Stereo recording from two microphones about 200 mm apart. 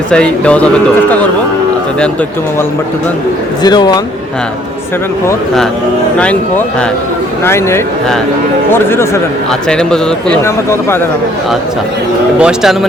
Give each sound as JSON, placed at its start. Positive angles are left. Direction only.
{"t": 0.1, "sound": "a man's voice", "side_deg": 5}
{"t": 3.6, "sound": "speech", "side_deg": 20}
{"t": 7.4, "sound": "a man's voice", "side_deg": 10}
{"t": 12.4, "sound": "a man's voice", "side_deg": -5}